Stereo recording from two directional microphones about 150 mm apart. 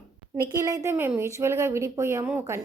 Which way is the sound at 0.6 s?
20° right (ahead or behind).